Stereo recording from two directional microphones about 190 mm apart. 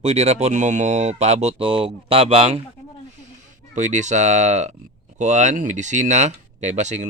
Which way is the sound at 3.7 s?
40° right (ahead or behind).